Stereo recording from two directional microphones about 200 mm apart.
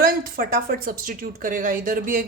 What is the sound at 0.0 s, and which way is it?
Speech, 45° right (ahead or behind).